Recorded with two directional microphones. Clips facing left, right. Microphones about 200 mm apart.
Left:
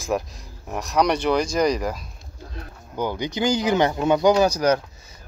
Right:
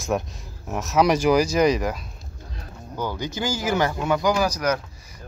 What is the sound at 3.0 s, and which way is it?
Speech, 15° left (ahead or behind).